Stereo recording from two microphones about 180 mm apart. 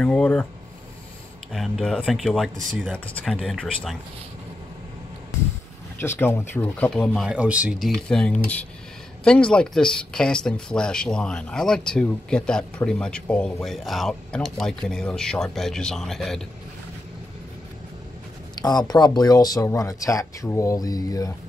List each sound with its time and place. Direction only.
0.0 s speech: 5° left (ahead or behind)
1.5 s speech: centre (ahead or behind)
5.9 s speech: 10° left (ahead or behind)
7.2 s speech: 5° right (ahead or behind)
18.6 s speech: 20° left (ahead or behind)